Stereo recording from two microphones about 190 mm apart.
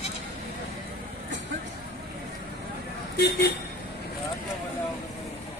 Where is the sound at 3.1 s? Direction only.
60° left (ahead or behind).